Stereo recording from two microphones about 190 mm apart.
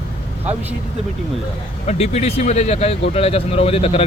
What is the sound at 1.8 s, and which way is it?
Speech, 35° left (ahead or behind).